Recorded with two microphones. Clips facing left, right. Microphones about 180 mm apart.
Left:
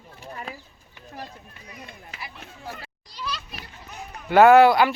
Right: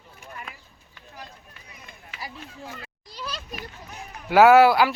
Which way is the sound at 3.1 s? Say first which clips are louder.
Left 2 dB; 45° right (ahead or behind).